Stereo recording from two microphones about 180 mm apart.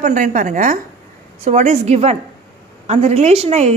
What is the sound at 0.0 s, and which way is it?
A woman's voice, 45° right (ahead or behind).